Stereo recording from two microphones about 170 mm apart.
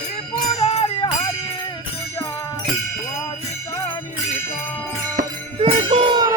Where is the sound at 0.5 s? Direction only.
40° left (ahead or behind).